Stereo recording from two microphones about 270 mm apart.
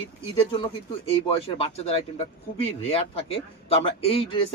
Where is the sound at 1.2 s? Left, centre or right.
Left.